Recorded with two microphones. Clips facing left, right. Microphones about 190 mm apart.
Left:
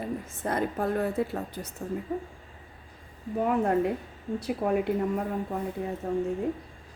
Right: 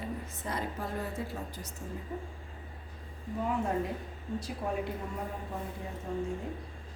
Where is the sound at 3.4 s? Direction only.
60° left (ahead or behind).